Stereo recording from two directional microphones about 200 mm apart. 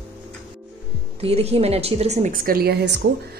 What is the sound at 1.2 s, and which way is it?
A woman's voice, 30° right (ahead or behind).